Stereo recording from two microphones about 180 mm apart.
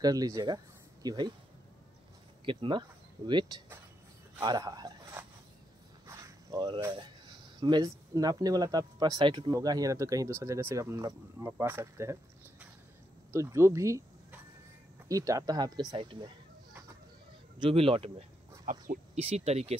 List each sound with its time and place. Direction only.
0.0 s speech: 20° right (ahead or behind)
2.4 s speech: 25° right (ahead or behind)
3.2 s speech: 15° right (ahead or behind)
4.4 s speech: 20° right (ahead or behind)
17.6 s speech: 30° right (ahead or behind)
18.7 s speech: 50° right (ahead or behind)
19.2 s speech: 35° right (ahead or behind)